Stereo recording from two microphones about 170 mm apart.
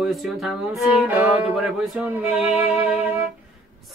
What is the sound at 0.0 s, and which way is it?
Music, centre (ahead or behind).